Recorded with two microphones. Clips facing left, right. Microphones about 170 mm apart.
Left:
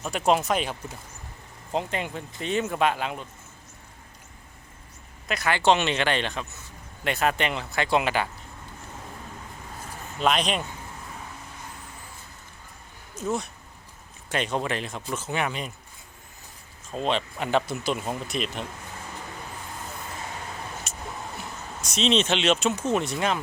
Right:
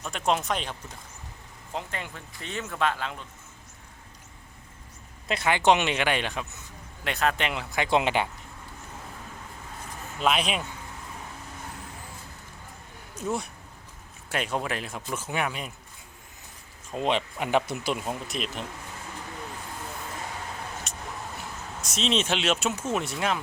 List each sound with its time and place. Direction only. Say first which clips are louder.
0.0 s speech: left 4 dB; 5° left (ahead or behind)
1.7 s speech: left 7 dB; 20° left (ahead or behind)
5.3 s speech: even; 20° right (ahead or behind)
7.0 s speech: left 2 dB; 5° left (ahead or behind); by 8.3 s 20° right (ahead or behind)
10.2 s speech: left 2 dB; 5° right (ahead or behind)
13.2 s speech: left 2 dB; 10° right (ahead or behind)
16.9 s speech: even; 15° right (ahead or behind)
18.0 s speech: left 2 dB; centre (ahead or behind)
20.9 s vehicle: even; centre (ahead or behind)
21.8 s speech: left 4 dB; centre (ahead or behind)